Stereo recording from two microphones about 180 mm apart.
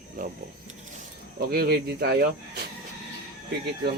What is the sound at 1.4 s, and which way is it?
Speech, 60° right (ahead or behind).